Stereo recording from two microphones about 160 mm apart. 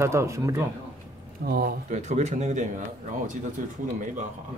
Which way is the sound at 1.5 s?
70° right (ahead or behind).